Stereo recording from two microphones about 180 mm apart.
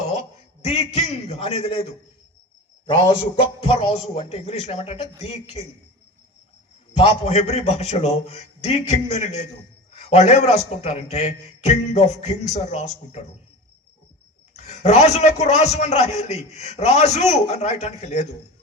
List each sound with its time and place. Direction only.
0.6 s a man's voice: 35° left (ahead or behind)
6.9 s a man's voice: 35° left (ahead or behind)
14.5 s a man's voice: 40° left (ahead or behind)